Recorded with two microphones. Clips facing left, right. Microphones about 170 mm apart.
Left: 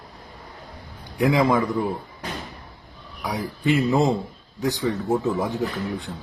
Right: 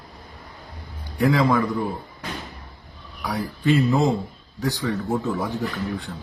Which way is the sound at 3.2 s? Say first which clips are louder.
Right 1 dB; 15° left (ahead or behind).